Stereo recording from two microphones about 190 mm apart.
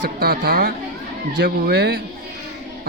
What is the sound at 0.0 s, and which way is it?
A woman's voice, 55° right (ahead or behind).